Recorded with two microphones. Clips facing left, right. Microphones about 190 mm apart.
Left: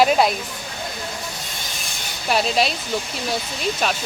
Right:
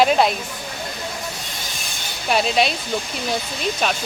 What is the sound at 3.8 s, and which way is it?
Speech, centre (ahead or behind).